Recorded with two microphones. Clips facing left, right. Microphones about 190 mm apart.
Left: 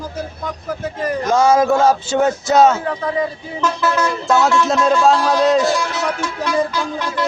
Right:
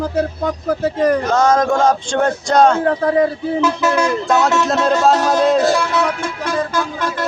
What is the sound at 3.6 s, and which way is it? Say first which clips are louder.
Speech: right 1 dB; 10° right (ahead or behind).